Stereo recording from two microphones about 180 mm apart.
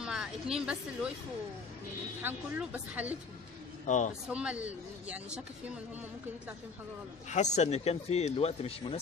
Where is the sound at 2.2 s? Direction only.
10° right (ahead or behind).